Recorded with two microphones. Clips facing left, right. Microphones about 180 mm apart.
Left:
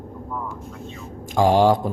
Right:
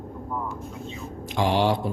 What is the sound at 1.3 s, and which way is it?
Speech, 45° left (ahead or behind).